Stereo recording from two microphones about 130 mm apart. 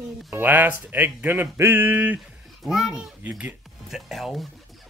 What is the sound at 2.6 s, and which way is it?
A child's voice, 5° right (ahead or behind).